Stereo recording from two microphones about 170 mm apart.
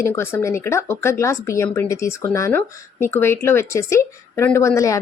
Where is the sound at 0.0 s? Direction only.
15° left (ahead or behind).